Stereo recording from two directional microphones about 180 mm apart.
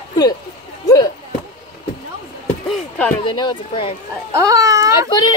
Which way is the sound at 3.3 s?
25° left (ahead or behind).